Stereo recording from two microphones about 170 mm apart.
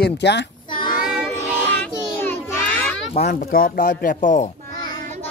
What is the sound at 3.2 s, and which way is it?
Speech, 50° left (ahead or behind).